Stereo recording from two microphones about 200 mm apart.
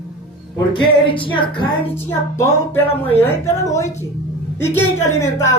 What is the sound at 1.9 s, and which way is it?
A woman's voice, 15° left (ahead or behind).